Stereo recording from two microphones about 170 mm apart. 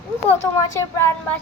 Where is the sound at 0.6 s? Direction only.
20° left (ahead or behind).